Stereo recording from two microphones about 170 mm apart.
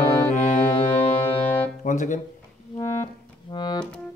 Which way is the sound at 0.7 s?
30° left (ahead or behind).